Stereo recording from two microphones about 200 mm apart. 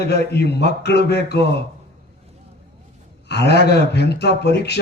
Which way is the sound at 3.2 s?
55° left (ahead or behind).